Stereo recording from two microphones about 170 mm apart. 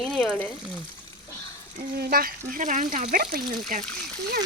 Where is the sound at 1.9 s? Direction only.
60° right (ahead or behind).